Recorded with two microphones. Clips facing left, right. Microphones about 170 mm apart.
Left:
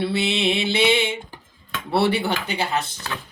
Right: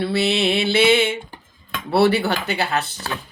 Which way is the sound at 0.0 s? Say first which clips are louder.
Right 3 dB; 20° left (ahead or behind).